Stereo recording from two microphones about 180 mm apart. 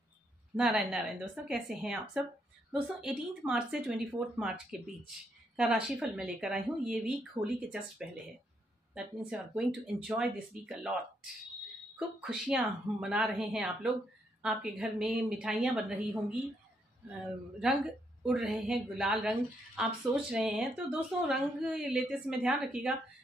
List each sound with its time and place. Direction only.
0.6 s a woman's voice: centre (ahead or behind)
8.9 s a woman's voice: 5° right (ahead or behind)
12.2 s a woman's voice: 5° right (ahead or behind)
17.6 s a woman's voice: 5° right (ahead or behind)